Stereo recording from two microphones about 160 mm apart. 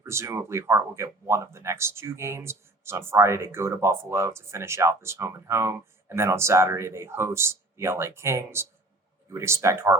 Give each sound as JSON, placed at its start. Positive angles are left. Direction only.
{"t": 0.0, "sound": "speech", "side_deg": -15}